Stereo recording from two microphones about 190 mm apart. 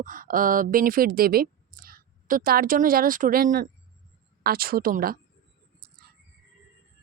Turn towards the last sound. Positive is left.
turn(degrees=-50)  # may be behind; listen again after turning